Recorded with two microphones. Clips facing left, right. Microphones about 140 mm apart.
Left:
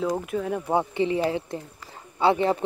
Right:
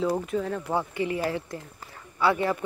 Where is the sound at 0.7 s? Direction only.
20° left (ahead or behind).